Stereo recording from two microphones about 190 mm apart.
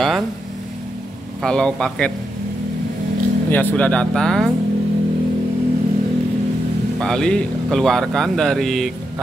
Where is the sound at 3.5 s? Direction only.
10° left (ahead or behind).